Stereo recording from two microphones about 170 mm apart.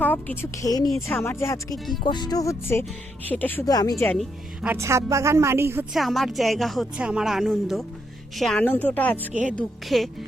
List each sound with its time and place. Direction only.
0.0 s a woman's voice: 10° left (ahead or behind)
2.0 s a woman's voice: 25° left (ahead or behind)
3.7 s speech: 20° left (ahead or behind)
4.2 s a woman's voice: 10° right (ahead or behind)
5.9 s a woman's voice: centre (ahead or behind)